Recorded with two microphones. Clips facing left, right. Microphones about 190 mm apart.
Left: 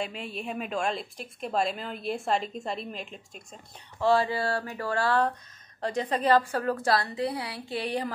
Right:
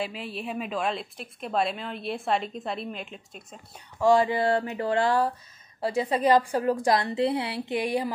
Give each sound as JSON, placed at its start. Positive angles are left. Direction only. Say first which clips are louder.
{"t": 0.0, "sound": "a woman's voice", "louder": "right 1 dB", "side_deg": 0}
{"t": 4.0, "sound": "speech", "louder": "right 3 dB", "side_deg": -15}
{"t": 5.8, "sound": "a woman's voice", "louder": "right 3 dB", "side_deg": -10}